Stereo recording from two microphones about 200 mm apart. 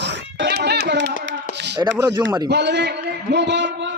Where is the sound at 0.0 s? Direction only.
60° right (ahead or behind).